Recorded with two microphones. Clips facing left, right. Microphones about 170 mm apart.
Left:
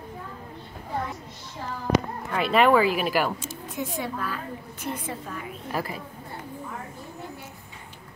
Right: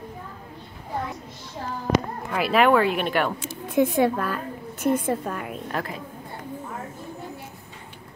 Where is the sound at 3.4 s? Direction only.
60° right (ahead or behind).